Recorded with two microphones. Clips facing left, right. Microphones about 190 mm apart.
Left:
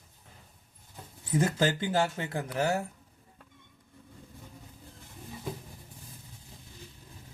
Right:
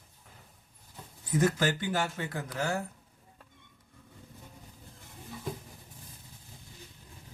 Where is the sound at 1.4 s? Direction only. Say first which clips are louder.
Even; 25° left (ahead or behind).